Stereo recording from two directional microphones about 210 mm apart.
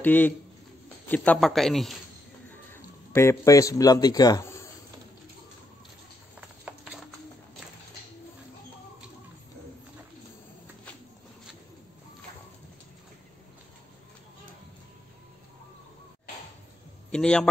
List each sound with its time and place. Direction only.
0.0 s a man's voice: 10° left (ahead or behind)
2.5 s speech: 10° left (ahead or behind)
6.6 s a sound: 5° right (ahead or behind)
17.1 s a man's voice: 5° left (ahead or behind)